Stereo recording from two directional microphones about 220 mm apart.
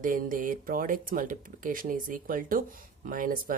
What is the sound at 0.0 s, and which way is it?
Speech, 35° right (ahead or behind).